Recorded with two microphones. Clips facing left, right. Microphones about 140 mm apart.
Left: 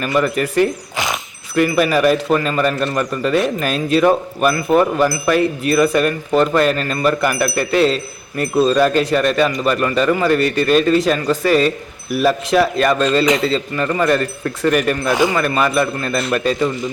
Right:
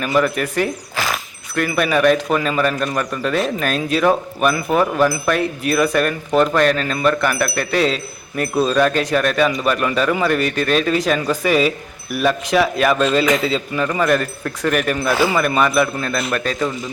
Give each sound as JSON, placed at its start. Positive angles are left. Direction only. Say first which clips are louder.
{"t": 0.0, "sound": "speech", "louder": "left 1 dB", "side_deg": 0}
{"t": 0.9, "sound": "a sound", "louder": "left 1 dB", "side_deg": 20}
{"t": 1.5, "sound": "speech", "louder": "left 3 dB", "side_deg": 5}
{"t": 16.6, "sound": "speech", "louder": "left 3 dB", "side_deg": 20}